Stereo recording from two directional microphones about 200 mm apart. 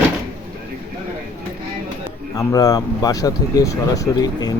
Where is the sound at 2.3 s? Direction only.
15° left (ahead or behind).